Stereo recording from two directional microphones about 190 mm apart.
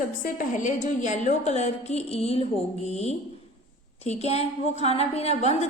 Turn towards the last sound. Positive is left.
turn(degrees=35)  # may be behind; listen again after turning